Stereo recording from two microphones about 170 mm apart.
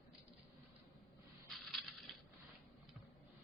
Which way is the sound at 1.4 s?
Centre (ahead or behind).